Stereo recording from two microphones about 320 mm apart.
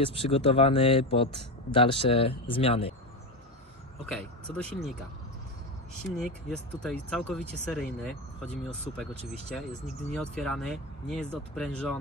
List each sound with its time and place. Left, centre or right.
0.0 s speech: centre
4.6 s speech: centre
6.0 s speech: centre
9.6 s speech: centre